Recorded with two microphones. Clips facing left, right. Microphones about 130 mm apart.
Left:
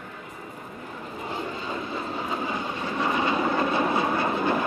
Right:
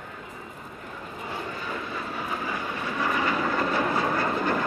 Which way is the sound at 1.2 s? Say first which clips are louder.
Left 2 dB; 20° left (ahead or behind).